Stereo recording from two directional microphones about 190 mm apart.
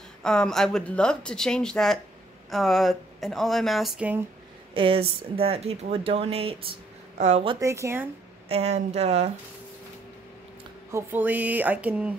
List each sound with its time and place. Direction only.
0.2 s speech: 5° left (ahead or behind)
4.7 s speech: 30° right (ahead or behind)
7.5 s speech: 15° right (ahead or behind)
8.5 s speech: 35° right (ahead or behind)
10.9 s speech: 10° right (ahead or behind)